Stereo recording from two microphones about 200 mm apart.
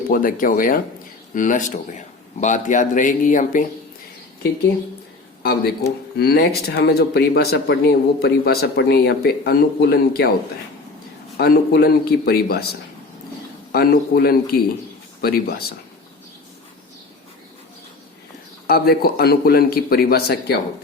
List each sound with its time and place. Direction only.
0.1 s speech: 45° left (ahead or behind)
5.4 s a man's voice: 50° left (ahead or behind)
11.3 s speech: 50° left (ahead or behind)
13.7 s speech: 50° left (ahead or behind)
18.7 s speech: 50° left (ahead or behind)